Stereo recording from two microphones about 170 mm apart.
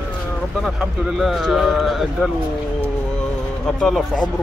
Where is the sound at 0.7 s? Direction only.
Centre (ahead or behind).